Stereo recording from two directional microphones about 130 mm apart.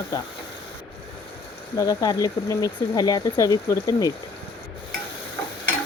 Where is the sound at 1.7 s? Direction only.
25° left (ahead or behind).